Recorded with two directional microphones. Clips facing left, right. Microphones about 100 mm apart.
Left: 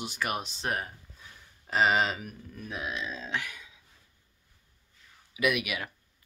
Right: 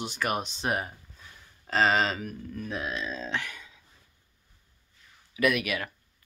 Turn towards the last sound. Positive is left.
turn(degrees=10)  # may be behind; listen again after turning